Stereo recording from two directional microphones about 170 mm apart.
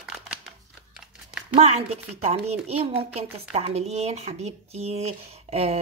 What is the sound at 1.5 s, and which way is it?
Speech, 40° right (ahead or behind).